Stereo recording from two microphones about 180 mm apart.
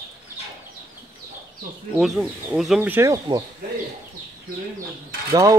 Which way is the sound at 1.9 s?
Centre (ahead or behind).